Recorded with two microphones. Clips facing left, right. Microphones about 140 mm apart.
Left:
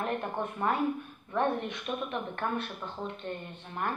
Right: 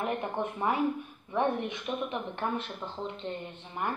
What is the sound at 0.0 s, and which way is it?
Speech, 10° right (ahead or behind).